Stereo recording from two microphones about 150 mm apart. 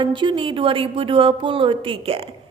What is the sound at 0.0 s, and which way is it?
A woman's voice, 30° right (ahead or behind).